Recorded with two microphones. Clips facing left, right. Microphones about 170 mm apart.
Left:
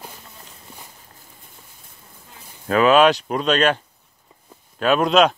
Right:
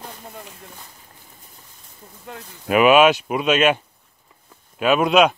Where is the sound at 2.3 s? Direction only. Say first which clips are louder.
Right 14 dB; 75° right (ahead or behind).